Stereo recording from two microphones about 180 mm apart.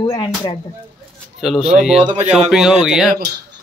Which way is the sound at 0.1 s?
25° left (ahead or behind).